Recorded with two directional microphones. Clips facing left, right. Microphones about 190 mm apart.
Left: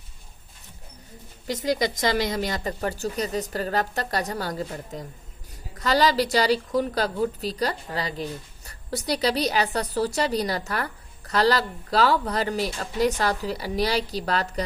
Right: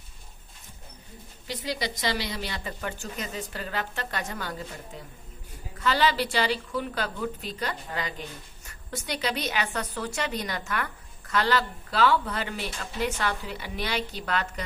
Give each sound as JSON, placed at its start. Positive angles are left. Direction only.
{"t": 1.5, "sound": "a woman's voice", "side_deg": 45}